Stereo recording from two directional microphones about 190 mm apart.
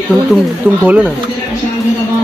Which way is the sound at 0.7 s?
10° right (ahead or behind).